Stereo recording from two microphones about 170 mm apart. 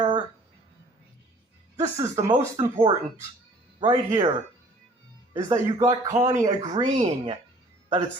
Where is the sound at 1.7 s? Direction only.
15° right (ahead or behind).